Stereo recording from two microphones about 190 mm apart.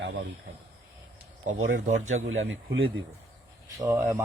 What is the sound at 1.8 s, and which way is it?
Speech, 40° right (ahead or behind).